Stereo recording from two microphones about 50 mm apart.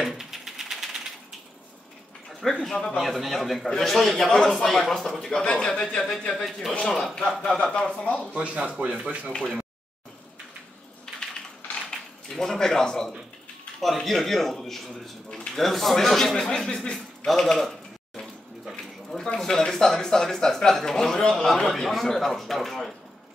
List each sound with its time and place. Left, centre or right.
0.0 s typewriter: centre
2.6 s speech: centre
3.0 s speech: centre
7.4 s speech: centre
8.4 s speech: right
9.3 s speech: centre
11.1 s typing: centre
12.3 s speech: centre
19.0 s speech: centre